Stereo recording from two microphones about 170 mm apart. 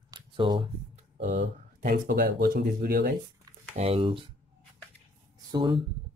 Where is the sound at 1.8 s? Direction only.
65° right (ahead or behind).